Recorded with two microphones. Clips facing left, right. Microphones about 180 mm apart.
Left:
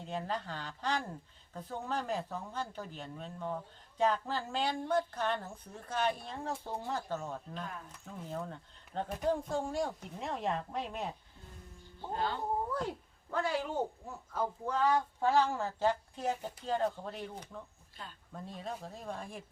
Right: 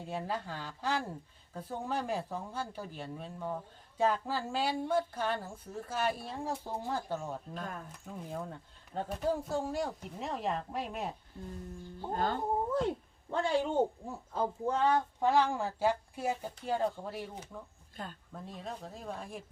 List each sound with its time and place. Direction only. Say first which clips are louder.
0.0 s a woman's voice: right 1 dB; 10° right (ahead or behind)
12.1 s speech: right 2 dB; 45° right (ahead or behind)
12.7 s speech: right 5 dB; 25° right (ahead or behind); by 17.6 s 10° right (ahead or behind)
17.9 s speech: right 6 dB; 45° right (ahead or behind)
18.3 s a woman's voice: left 1 dB; centre (ahead or behind)